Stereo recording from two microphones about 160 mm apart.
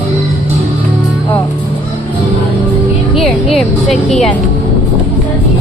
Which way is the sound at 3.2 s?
Centre (ahead or behind).